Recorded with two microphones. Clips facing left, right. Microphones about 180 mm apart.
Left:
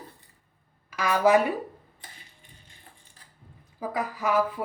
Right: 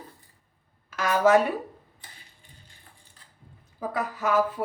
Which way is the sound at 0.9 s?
10° left (ahead or behind).